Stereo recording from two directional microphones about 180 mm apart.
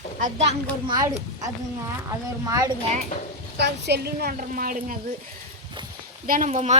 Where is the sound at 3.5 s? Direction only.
70° right (ahead or behind); by 4.9 s 50° right (ahead or behind).